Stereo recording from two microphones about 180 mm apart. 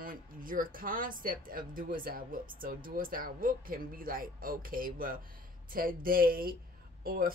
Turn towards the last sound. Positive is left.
turn(degrees=-55)  # may be behind; listen again after turning